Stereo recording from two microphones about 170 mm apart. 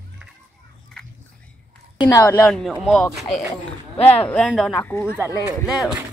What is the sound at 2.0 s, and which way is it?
Speech, 20° left (ahead or behind).